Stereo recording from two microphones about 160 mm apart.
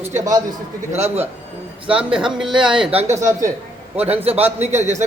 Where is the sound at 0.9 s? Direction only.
45° right (ahead or behind).